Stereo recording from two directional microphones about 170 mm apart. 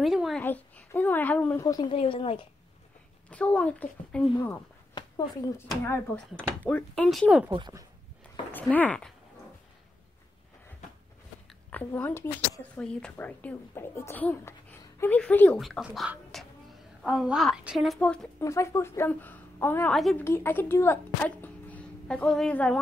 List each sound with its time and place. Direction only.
0.0 s a woman's voice: centre (ahead or behind)
0.4 s a child's voice: 10° left (ahead or behind)
1.9 s speech: 30° left (ahead or behind)
3.3 s a child's voice: 5° left (ahead or behind)
4.9 s speech: 25° left (ahead or behind)
6.1 s a woman's voice: 10° left (ahead or behind)
7.4 s speech: 20° right (ahead or behind)
8.5 s speech: 10° left (ahead or behind)
11.7 s a child's voice: 10° left (ahead or behind)
15.6 s a woman's voice: centre (ahead or behind)
18.4 s a child's voice: 15° left (ahead or behind)
20.0 s a woman's voice: centre (ahead or behind)
20.2 s speech: 15° left (ahead or behind)